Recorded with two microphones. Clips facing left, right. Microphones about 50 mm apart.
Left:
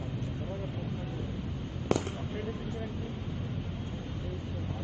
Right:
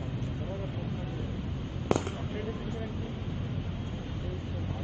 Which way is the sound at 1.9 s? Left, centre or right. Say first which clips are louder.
Right 1 dB; centre.